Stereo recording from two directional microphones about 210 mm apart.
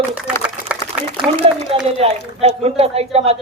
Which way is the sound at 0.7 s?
5° right (ahead or behind).